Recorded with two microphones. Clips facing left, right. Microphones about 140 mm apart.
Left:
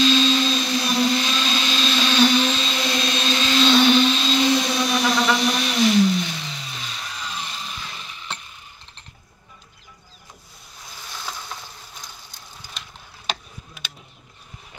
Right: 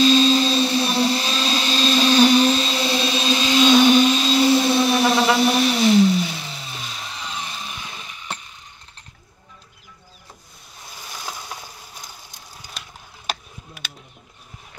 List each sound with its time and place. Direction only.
0.0 s vehicle: 40° right (ahead or behind)
2.9 s vehicle: 5° right (ahead or behind)
5.0 s a sound: 30° right (ahead or behind)
5.5 s vehicle: 5° right (ahead or behind)
7.0 s vehicle: 25° right (ahead or behind)
11.1 s boat: 10° right (ahead or behind)
13.3 s tick: 5° right (ahead or behind)